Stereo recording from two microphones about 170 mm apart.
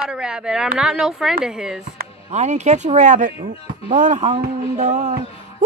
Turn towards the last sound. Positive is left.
turn(degrees=-45)  # may be behind; listen again after turning